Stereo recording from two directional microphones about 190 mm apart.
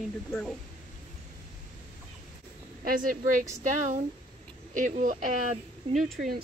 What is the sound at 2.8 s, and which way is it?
Speech, 45° right (ahead or behind).